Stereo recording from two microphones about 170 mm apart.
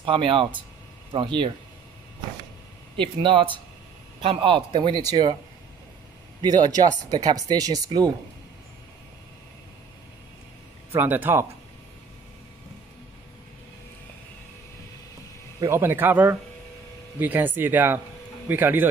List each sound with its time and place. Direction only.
0.0 s speech: 30° right (ahead or behind)
3.0 s speech: 30° right (ahead or behind)
6.4 s speech: 25° right (ahead or behind)
10.9 s speech: 10° right (ahead or behind)
15.6 s speech: 15° right (ahead or behind)